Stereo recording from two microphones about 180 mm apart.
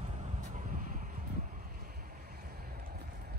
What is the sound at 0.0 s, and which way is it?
Vehicle, 40° right (ahead or behind).